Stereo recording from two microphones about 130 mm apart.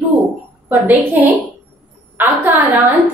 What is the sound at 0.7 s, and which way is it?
A woman's voice, 15° right (ahead or behind).